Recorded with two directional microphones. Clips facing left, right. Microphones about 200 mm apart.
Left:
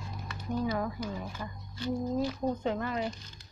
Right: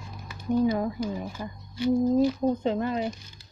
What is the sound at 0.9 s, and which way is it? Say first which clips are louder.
Speech: right 6 dB; 15° right (ahead or behind).